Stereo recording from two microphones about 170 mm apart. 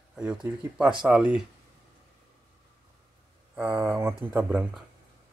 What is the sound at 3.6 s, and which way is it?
Speech, 10° right (ahead or behind).